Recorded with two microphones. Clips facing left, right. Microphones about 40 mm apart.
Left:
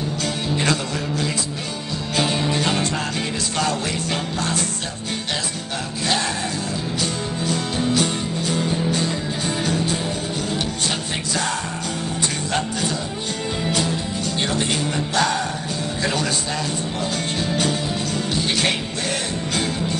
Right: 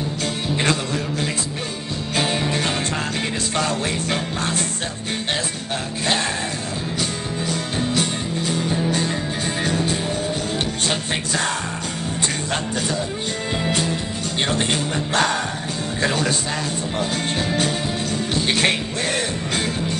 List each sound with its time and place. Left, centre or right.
0.6 s music: right
9.6 s music: right
14.5 s music: right
18.3 s music: right